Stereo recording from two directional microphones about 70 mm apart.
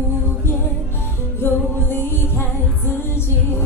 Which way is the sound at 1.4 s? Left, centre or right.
Left.